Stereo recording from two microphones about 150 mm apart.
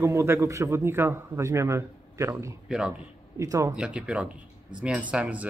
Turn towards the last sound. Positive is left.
turn(degrees=-10)  # may be behind; listen again after turning